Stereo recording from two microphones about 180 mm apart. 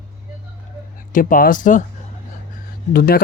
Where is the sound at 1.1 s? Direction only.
50° left (ahead or behind).